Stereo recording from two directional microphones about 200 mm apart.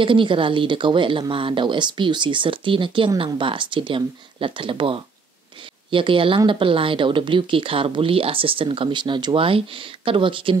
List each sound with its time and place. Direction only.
0.0 s speech: 25° right (ahead or behind)